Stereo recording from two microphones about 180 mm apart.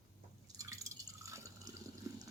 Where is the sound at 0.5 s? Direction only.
20° right (ahead or behind).